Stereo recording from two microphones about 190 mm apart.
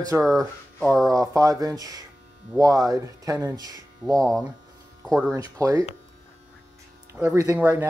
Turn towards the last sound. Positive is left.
turn(degrees=-10)  # may be behind; listen again after turning